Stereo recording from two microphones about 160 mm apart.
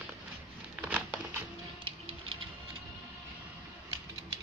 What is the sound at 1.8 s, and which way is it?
Music, 35° right (ahead or behind).